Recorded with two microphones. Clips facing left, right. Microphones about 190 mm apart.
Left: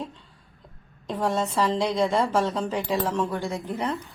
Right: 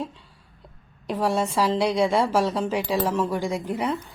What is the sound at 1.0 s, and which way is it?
A woman's voice, 10° right (ahead or behind).